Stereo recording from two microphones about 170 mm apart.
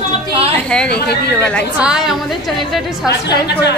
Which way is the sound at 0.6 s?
5° left (ahead or behind).